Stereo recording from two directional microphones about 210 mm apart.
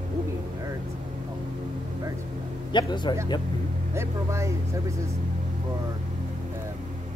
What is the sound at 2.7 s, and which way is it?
Speech, 20° left (ahead or behind).